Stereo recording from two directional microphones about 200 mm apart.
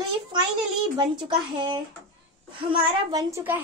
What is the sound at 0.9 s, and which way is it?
A child's voice, 20° right (ahead or behind).